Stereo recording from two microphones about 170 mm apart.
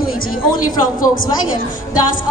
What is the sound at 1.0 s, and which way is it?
Speech, 55° left (ahead or behind).